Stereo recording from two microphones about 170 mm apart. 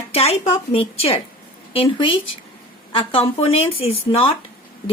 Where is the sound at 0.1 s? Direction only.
35° left (ahead or behind).